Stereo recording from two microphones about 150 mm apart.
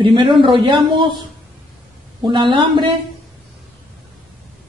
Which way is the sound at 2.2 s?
30° right (ahead or behind).